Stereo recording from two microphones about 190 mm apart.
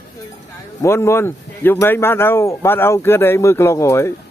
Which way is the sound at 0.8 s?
15° left (ahead or behind).